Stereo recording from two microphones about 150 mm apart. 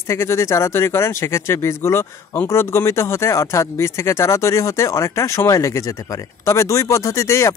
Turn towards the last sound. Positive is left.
turn(degrees=20)  # may be behind; listen again after turning